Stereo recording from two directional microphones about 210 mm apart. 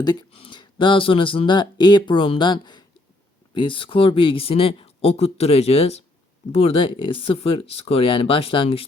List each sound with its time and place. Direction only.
0.0 s speech: 20° left (ahead or behind)